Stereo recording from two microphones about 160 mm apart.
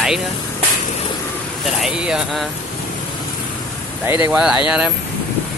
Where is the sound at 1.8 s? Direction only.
5° right (ahead or behind).